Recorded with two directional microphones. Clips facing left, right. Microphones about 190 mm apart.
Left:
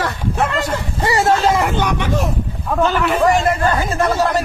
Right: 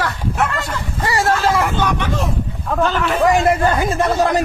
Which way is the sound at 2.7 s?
Centre (ahead or behind).